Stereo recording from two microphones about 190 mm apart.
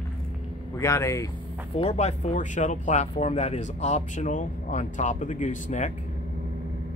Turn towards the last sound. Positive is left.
turn(degrees=40)  # may be behind; listen again after turning